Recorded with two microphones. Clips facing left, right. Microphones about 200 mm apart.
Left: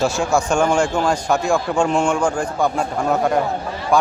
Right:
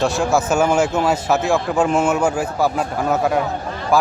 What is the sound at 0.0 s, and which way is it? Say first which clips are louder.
A man's voice: right 1 dB; centre (ahead or behind).